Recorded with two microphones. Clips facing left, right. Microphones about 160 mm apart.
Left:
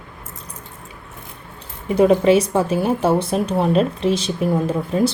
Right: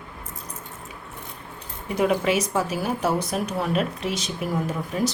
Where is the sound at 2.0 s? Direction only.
30° left (ahead or behind).